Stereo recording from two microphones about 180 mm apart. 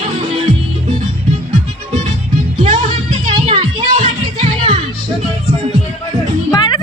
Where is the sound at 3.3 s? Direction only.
30° right (ahead or behind).